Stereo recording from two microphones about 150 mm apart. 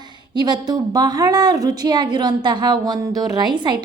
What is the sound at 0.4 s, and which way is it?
A woman's voice, 30° right (ahead or behind).